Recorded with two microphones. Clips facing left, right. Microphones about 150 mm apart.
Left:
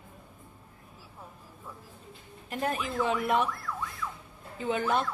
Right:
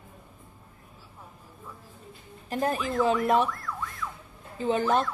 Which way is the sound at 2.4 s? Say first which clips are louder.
Right 4 dB; 35° right (ahead or behind).